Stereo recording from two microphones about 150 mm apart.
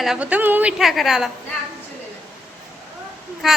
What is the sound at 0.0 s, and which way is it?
Speech, 5° right (ahead or behind).